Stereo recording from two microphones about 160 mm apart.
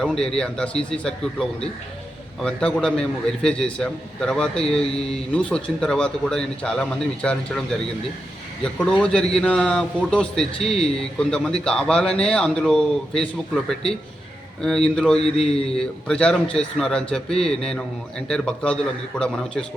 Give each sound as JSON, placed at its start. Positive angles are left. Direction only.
{"t": 0.0, "sound": "a man's voice", "side_deg": 5}
{"t": 8.6, "sound": "a man's voice", "side_deg": 5}
{"t": 14.9, "sound": "a man's voice", "side_deg": 5}
{"t": 15.2, "sound": "mantra", "side_deg": 40}
{"t": 15.5, "sound": "a man's voice", "side_deg": 5}